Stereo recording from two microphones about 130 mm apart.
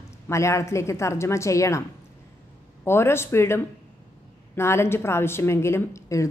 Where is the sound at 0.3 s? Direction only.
20° left (ahead or behind).